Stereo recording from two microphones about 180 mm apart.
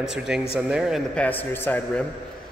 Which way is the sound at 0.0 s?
5° right (ahead or behind).